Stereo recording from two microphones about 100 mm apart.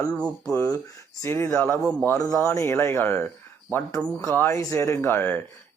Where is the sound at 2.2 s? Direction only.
35° left (ahead or behind).